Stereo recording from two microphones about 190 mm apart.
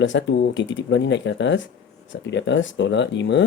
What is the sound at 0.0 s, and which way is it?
Speech, 70° left (ahead or behind).